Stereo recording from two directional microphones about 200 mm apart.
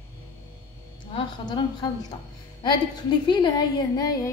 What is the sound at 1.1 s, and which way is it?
A woman's voice, 20° left (ahead or behind).